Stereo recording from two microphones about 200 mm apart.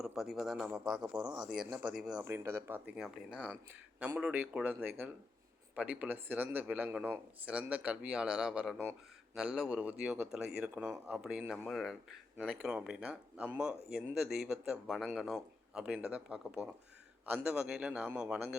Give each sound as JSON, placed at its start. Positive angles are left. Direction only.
{"t": 0.0, "sound": "a man's voice", "side_deg": 0}